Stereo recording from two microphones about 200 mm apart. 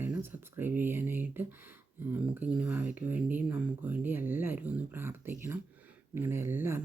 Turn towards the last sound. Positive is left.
turn(degrees=-10)  # may be behind; listen again after turning